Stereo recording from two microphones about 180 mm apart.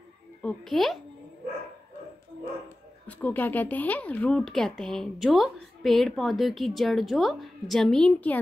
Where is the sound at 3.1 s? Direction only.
10° left (ahead or behind).